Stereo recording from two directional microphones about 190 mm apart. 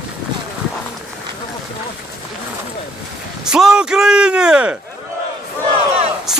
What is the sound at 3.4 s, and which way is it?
Speech, 5° right (ahead or behind).